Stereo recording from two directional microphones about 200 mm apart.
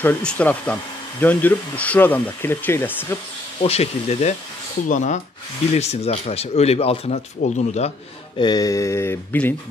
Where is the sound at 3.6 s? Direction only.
30° left (ahead or behind).